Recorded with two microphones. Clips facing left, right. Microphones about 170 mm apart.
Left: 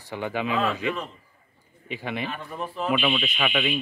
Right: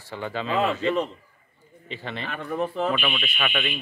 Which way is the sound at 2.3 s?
65° right (ahead or behind).